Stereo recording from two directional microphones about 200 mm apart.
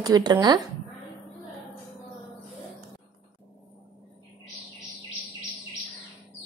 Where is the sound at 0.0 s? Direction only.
20° right (ahead or behind).